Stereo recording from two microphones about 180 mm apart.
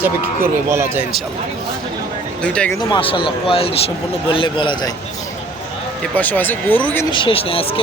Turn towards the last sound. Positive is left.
turn(degrees=30)  # may be behind; listen again after turning